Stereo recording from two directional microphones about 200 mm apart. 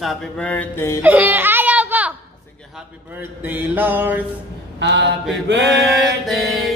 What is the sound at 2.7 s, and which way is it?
Mantra, 10° right (ahead or behind).